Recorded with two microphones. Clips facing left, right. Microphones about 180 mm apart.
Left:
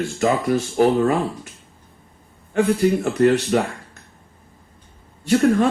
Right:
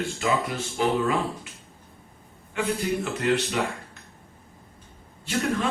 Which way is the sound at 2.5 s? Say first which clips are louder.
Left 9 dB; 45° left (ahead or behind).